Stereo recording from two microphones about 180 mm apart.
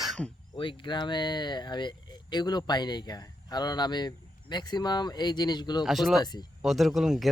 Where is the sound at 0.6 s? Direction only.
25° left (ahead or behind).